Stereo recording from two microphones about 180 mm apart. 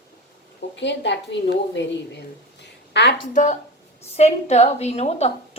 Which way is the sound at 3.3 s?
40° left (ahead or behind).